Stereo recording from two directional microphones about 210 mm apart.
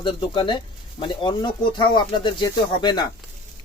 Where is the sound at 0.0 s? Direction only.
20° left (ahead or behind).